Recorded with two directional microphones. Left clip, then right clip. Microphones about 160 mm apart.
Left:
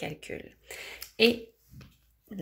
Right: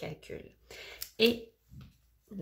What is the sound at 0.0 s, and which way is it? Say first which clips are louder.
Speech: left 5 dB; 10° left (ahead or behind).